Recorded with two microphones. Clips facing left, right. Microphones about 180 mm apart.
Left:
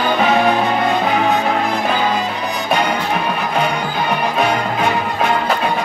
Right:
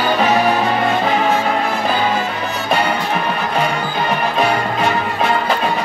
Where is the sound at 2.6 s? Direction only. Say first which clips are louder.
Even; 15° left (ahead or behind).